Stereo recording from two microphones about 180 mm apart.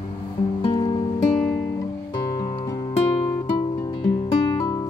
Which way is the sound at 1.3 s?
5° left (ahead or behind).